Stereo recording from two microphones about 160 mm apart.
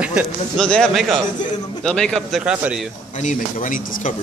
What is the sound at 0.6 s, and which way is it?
Speech, 5° left (ahead or behind).